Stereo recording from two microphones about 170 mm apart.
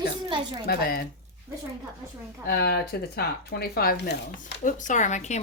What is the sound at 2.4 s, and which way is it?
Speech, 70° left (ahead or behind).